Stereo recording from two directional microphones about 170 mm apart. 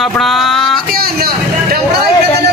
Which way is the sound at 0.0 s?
Centre (ahead or behind).